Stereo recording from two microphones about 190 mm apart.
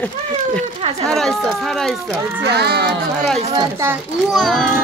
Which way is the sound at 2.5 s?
55° right (ahead or behind).